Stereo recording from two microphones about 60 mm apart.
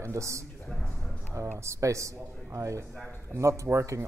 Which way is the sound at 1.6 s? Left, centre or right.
Right.